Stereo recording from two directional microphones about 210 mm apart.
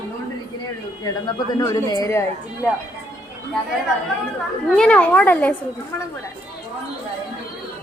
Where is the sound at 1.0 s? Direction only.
15° left (ahead or behind).